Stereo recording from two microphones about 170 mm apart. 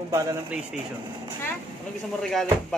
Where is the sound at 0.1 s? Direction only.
15° right (ahead or behind).